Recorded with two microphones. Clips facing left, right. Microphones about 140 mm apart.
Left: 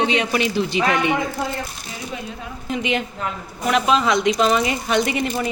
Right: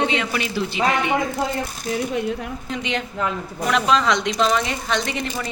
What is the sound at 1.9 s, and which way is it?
Speech, 60° right (ahead or behind).